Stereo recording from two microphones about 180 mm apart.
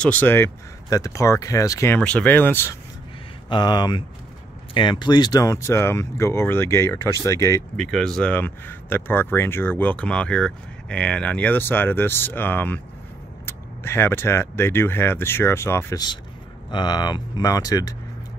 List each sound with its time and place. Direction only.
0.0 s speech: 10° left (ahead or behind)
3.4 s speech: 25° left (ahead or behind)
7.7 s speech: 5° left (ahead or behind); by 17.9 s 20° left (ahead or behind)